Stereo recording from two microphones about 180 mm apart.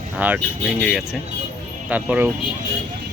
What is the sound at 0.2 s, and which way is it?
Speech, 10° right (ahead or behind).